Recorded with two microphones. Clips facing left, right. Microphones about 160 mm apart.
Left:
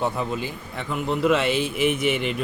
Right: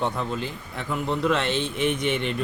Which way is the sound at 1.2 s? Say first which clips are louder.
Left 4 dB; 5° left (ahead or behind).